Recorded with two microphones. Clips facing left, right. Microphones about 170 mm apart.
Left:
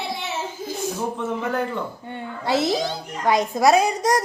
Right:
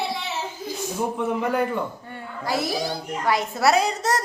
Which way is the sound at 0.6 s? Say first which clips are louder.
Left 1 dB; 20° left (ahead or behind).